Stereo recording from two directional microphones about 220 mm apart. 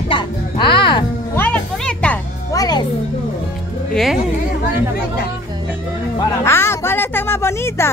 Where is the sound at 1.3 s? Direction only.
10° left (ahead or behind).